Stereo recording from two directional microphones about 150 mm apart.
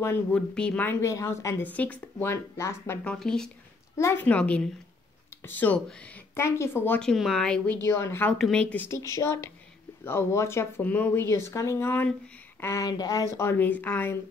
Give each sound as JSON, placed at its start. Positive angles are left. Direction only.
{"t": 0.0, "sound": "a woman's voice", "side_deg": 10}
{"t": 3.0, "sound": "speech", "side_deg": 5}
{"t": 3.9, "sound": "a woman's voice", "side_deg": 15}
{"t": 7.8, "sound": "a woman's voice", "side_deg": 15}
{"t": 13.4, "sound": "a woman's voice", "side_deg": 15}